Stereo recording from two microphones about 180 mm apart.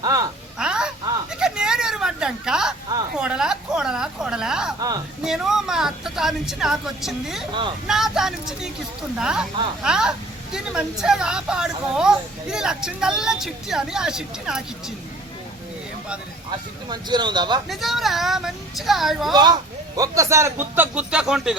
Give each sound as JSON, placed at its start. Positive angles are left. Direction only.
{"t": 0.0, "sound": "a sound", "side_deg": -20}
{"t": 0.6, "sound": "a sound", "side_deg": -5}
{"t": 3.2, "sound": "a woman's voice", "side_deg": -5}
{"t": 16.5, "sound": "speech", "side_deg": -25}
{"t": 17.7, "sound": "a woman's voice", "side_deg": 0}
{"t": 19.3, "sound": "a man's voice", "side_deg": -25}